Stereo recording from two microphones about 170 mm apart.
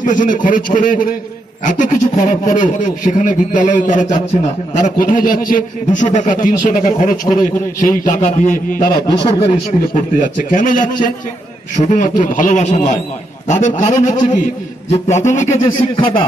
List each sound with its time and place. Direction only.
0.0 s a man's voice: 50° left (ahead or behind)
9.0 s a man's voice: 25° left (ahead or behind)
9.8 s a man's voice: 50° left (ahead or behind)
15.4 s speech: 15° left (ahead or behind)
16.0 s speech: 30° left (ahead or behind)